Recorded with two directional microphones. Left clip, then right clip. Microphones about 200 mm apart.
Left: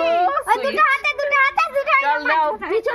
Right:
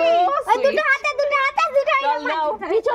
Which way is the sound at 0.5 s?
40° left (ahead or behind).